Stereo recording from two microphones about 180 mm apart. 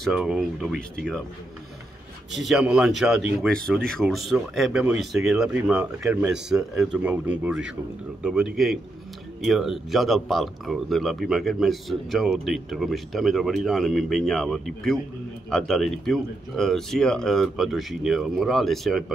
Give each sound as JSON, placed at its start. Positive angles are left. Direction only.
{"t": 0.0, "sound": "speech", "side_deg": -5}
{"t": 2.3, "sound": "speech", "side_deg": 0}